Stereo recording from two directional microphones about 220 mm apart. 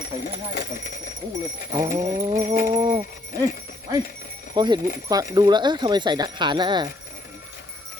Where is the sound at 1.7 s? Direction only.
15° right (ahead or behind).